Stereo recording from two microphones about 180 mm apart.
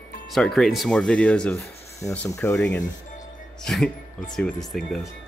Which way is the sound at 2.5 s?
5° left (ahead or behind).